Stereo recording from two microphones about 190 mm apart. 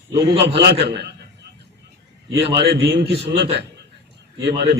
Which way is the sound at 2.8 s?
60° right (ahead or behind).